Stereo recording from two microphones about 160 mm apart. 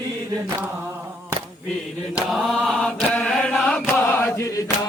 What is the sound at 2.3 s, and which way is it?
Chant, centre (ahead or behind).